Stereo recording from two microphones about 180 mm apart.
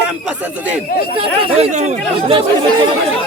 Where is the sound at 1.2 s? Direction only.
35° right (ahead or behind).